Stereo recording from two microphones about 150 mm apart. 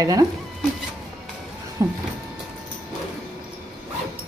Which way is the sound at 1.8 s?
20° right (ahead or behind).